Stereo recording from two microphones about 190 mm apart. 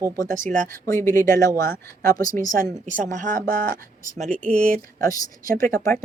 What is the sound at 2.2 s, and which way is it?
Speech, 45° right (ahead or behind).